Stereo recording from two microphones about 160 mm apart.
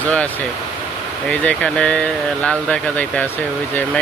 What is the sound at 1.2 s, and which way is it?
Speech, 5° left (ahead or behind).